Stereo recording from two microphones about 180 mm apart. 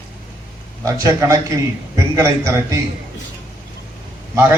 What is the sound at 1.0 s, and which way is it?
A man's voice, 15° right (ahead or behind).